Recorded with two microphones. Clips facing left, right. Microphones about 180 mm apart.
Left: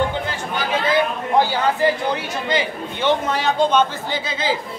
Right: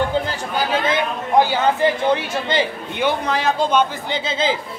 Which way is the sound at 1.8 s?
25° right (ahead or behind).